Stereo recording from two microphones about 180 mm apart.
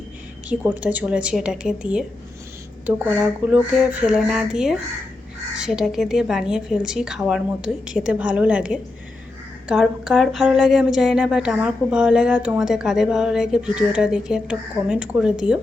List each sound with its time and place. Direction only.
0.4 s a woman's voice: 10° right (ahead or behind)